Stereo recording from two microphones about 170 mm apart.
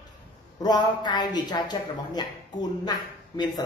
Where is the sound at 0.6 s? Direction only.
25° left (ahead or behind).